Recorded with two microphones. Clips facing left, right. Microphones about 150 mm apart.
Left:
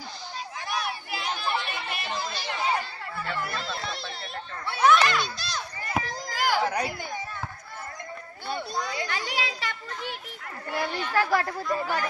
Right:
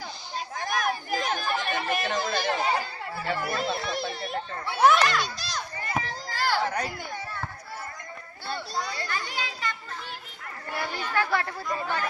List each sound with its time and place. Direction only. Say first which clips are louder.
0.6 s chatter: right 4 dB; 45° right (ahead or behind)
3.5 s speech: right 5 dB; 55° right (ahead or behind)
4.6 s a child's voice: even; centre (ahead or behind)
6.0 s a sound: left 1 dB; 15° left (ahead or behind)
8.5 s a sound: left 1 dB; 15° left (ahead or behind)
9.1 s children playing: left 2 dB; 85° left
9.6 s children playing: even; 70° left (ahead or behind)
11.6 s speech: left 2 dB; 5° left (ahead or behind)